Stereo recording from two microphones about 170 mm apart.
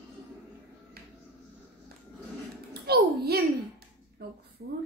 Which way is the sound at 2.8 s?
70° right (ahead or behind).